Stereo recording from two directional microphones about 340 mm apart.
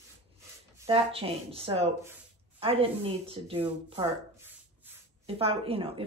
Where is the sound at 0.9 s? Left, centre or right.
Centre.